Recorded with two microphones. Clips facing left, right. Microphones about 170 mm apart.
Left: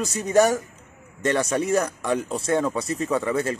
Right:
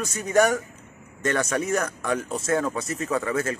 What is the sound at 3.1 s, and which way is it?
Speech, 30° left (ahead or behind).